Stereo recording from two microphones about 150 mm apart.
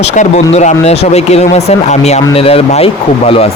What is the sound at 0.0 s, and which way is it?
Speech, 45° left (ahead or behind).